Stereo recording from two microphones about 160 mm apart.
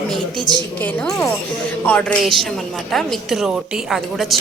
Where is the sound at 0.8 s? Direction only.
10° left (ahead or behind).